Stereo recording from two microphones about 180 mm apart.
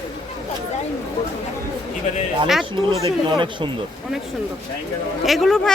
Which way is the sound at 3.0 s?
25° right (ahead or behind).